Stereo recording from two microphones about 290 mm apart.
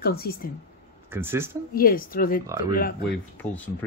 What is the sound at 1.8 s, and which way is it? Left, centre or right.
Speech, left.